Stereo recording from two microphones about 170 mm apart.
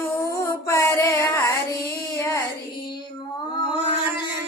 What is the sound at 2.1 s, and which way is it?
Child singing, 15° left (ahead or behind).